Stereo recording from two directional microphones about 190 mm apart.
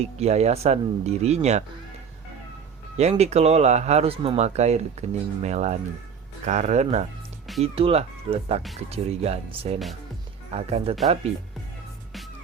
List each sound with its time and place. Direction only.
0.0 s speech: 35° right (ahead or behind)
3.0 s speech: 35° right (ahead or behind)